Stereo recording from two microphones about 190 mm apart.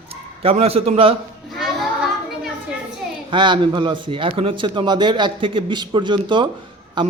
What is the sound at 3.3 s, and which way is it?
A man's voice, 25° right (ahead or behind).